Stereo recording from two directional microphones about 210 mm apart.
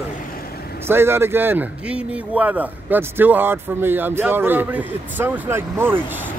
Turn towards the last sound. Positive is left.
turn(degrees=-10)  # may be behind; listen again after turning